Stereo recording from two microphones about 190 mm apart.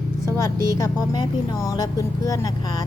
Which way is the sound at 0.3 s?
15° left (ahead or behind).